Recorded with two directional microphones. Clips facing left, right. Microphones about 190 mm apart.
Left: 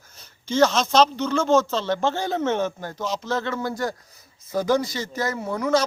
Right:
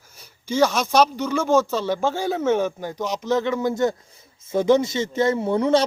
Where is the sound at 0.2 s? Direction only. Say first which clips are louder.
Even; 10° right (ahead or behind).